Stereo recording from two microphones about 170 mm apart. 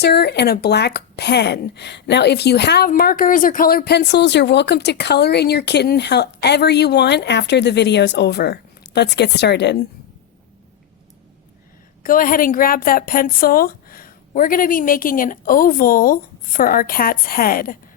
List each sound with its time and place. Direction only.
0.0 s speech: 75° left (ahead or behind)
12.0 s a woman's voice: 55° left (ahead or behind)